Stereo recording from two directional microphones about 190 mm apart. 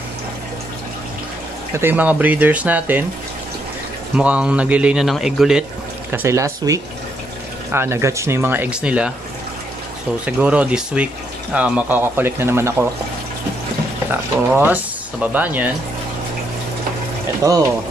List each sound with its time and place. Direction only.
1.7 s speech: 10° right (ahead or behind)
4.2 s a man's voice: 5° right (ahead or behind)
6.1 s speech: 15° right (ahead or behind)
10.2 s speech: 5° right (ahead or behind)
14.5 s speech: 5° right (ahead or behind)
17.4 s speech: 20° right (ahead or behind)